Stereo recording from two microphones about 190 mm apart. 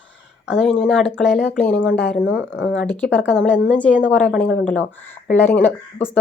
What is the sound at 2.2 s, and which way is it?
Speech, 70° left (ahead or behind).